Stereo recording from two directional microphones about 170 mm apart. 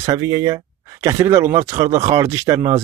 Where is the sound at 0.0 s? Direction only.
20° right (ahead or behind).